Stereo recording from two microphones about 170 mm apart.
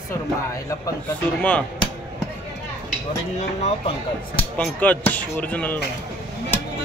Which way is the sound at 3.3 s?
40° left (ahead or behind).